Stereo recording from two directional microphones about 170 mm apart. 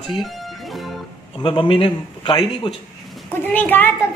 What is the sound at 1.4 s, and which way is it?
Speech, 30° left (ahead or behind).